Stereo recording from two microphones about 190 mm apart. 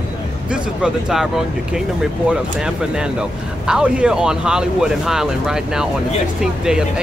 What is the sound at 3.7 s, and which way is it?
Speech, 5° right (ahead or behind).